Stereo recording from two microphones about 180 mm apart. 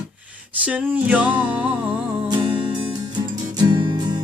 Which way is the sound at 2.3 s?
30° right (ahead or behind).